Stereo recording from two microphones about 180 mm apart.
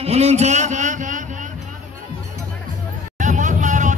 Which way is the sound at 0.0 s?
35° right (ahead or behind).